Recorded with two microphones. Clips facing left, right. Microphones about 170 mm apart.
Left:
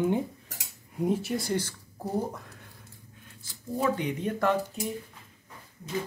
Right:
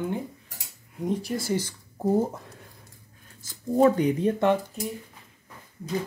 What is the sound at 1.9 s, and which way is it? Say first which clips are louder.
Speech: right 7 dB; 30° right (ahead or behind).